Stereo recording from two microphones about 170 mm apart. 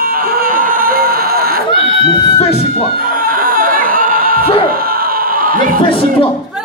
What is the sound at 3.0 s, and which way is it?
Snicker, 55° right (ahead or behind).